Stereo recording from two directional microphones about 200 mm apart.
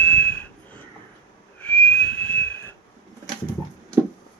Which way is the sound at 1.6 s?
5° left (ahead or behind).